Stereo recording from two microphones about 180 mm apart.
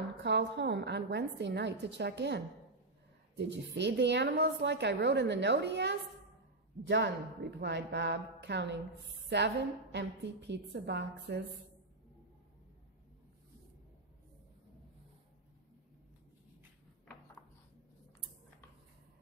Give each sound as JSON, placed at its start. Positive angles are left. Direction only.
{"t": 0.2, "sound": "a woman's voice", "side_deg": -70}